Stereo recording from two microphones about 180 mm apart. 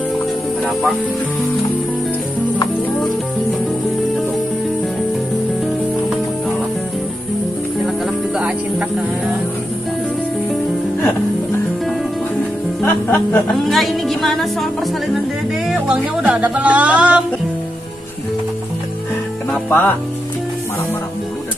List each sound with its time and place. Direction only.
8.4 s music: 5° right (ahead or behind)
12.8 s music: 10° left (ahead or behind)
15.9 s speech: 5° right (ahead or behind)
19.7 s speech: 10° left (ahead or behind)